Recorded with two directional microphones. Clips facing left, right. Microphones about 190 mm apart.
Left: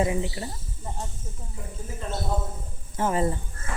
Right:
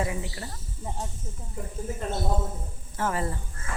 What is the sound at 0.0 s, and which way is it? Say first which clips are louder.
Speech: left 5 dB; 20° left (ahead or behind).